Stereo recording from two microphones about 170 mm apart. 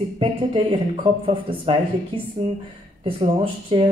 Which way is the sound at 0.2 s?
30° right (ahead or behind).